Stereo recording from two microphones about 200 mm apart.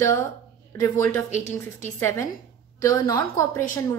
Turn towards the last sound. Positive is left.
turn(degrees=15)  # may be behind; listen again after turning